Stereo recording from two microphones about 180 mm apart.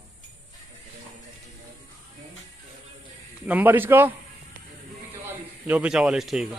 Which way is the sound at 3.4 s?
10° right (ahead or behind).